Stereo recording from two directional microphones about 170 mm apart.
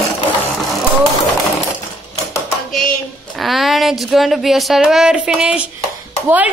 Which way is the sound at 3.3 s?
Centre (ahead or behind).